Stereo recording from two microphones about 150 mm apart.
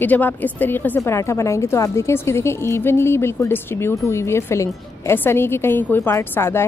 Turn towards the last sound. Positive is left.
turn(degrees=15)  # may be behind; listen again after turning